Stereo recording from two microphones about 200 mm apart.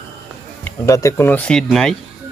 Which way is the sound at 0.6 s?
15° left (ahead or behind).